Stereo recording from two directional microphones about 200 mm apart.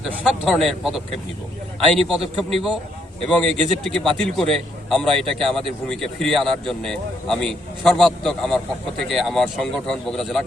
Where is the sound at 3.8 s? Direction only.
5° left (ahead or behind).